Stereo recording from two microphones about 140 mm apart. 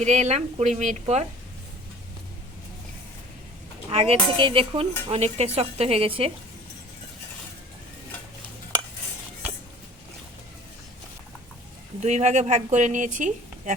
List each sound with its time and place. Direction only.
0.0 s speech: 55° right (ahead or behind)
3.8 s speech: 45° right (ahead or behind)
12.0 s speech: 55° right (ahead or behind)